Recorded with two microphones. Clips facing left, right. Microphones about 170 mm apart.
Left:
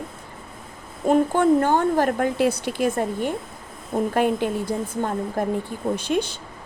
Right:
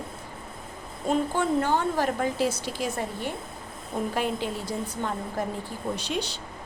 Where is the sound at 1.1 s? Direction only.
50° left (ahead or behind).